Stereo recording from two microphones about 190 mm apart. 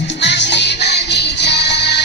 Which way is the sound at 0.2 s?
65° left (ahead or behind).